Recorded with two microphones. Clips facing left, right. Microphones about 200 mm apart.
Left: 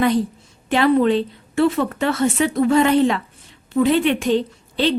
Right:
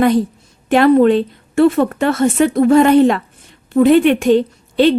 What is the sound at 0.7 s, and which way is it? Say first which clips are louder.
A woman's voice: right 6 dB; 50° right (ahead or behind).